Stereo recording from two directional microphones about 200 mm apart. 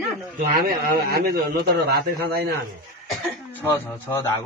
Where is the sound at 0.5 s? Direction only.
50° right (ahead or behind).